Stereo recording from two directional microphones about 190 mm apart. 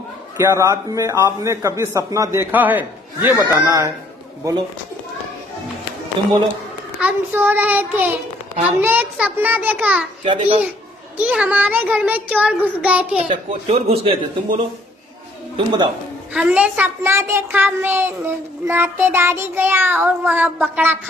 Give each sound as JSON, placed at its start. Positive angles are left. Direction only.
{"t": 0.4, "sound": "a child's voice", "side_deg": -15}
{"t": 6.2, "sound": "a child's voice", "side_deg": -25}
{"t": 7.0, "sound": "a child's voice", "side_deg": -10}
{"t": 10.2, "sound": "a child's voice", "side_deg": -30}
{"t": 11.1, "sound": "a child's voice", "side_deg": -5}
{"t": 13.5, "sound": "a man's voice", "side_deg": -35}
{"t": 16.3, "sound": "a child's voice", "side_deg": -5}